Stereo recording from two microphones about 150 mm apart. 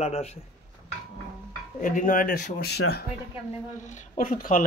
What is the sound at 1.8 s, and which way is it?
Speech, 60° left (ahead or behind).